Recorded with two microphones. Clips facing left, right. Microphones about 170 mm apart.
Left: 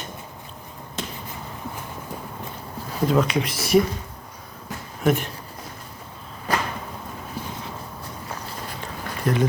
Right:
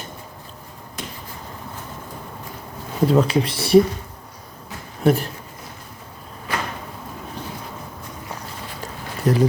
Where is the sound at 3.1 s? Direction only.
35° right (ahead or behind).